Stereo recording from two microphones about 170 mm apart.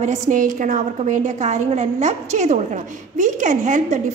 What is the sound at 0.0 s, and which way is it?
A woman's voice, 50° right (ahead or behind).